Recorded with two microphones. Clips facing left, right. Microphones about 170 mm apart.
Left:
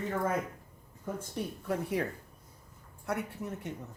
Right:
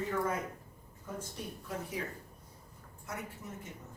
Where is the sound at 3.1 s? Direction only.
65° left (ahead or behind).